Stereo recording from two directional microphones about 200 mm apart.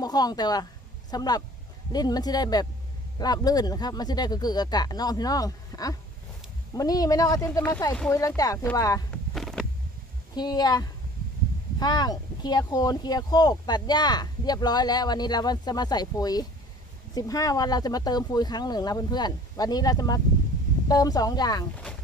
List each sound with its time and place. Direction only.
0.0 s speech: 20° left (ahead or behind)
8.4 s speech: 15° left (ahead or behind)
9.1 s a sound: centre (ahead or behind)
10.3 s speech: 20° left (ahead or behind)